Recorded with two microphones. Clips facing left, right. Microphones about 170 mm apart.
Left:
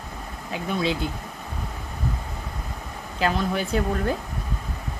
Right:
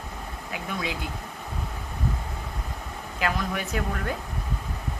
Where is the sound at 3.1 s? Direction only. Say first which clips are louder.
Left 4 dB; 30° left (ahead or behind).